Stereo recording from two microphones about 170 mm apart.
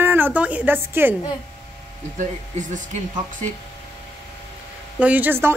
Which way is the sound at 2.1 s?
45° right (ahead or behind).